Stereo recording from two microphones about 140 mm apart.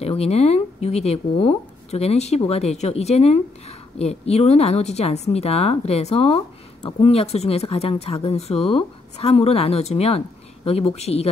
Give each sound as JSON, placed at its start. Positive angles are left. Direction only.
{"t": 0.0, "sound": "a woman's voice", "side_deg": 45}